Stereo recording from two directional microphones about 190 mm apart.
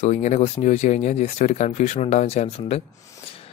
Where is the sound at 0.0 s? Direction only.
35° left (ahead or behind).